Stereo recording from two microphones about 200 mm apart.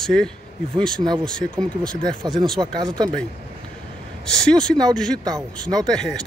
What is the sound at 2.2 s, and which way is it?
Speech, 20° right (ahead or behind).